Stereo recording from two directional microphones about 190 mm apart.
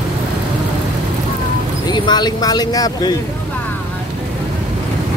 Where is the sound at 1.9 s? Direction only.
20° left (ahead or behind).